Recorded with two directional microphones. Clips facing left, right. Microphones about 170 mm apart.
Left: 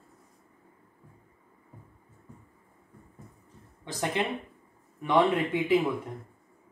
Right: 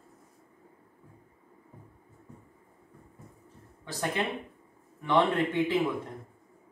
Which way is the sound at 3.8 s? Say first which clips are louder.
Left 1 dB; 20° left (ahead or behind).